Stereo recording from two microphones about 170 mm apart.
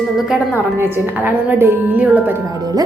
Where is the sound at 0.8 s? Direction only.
10° right (ahead or behind).